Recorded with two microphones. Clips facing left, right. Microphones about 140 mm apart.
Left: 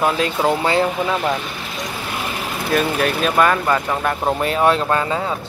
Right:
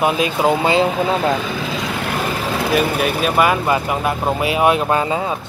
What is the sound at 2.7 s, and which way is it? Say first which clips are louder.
Speech: left 1 dB; 5° right (ahead or behind).